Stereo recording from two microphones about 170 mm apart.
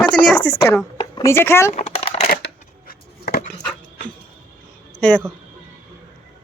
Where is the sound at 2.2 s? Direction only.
65° left (ahead or behind).